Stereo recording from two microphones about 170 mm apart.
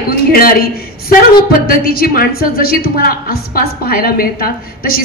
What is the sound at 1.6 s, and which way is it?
A woman's voice, 60° left (ahead or behind).